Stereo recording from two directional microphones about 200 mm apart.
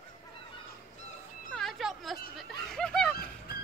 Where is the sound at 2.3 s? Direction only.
5° left (ahead or behind).